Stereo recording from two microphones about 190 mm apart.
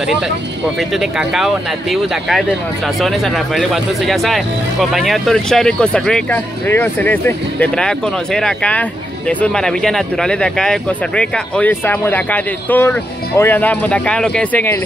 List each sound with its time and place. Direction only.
0.7 s speech: centre (ahead or behind)